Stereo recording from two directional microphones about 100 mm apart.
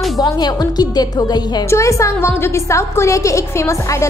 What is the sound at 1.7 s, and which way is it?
A woman's voice, 30° left (ahead or behind).